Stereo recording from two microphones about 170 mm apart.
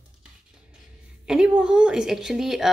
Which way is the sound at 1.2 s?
5° right (ahead or behind).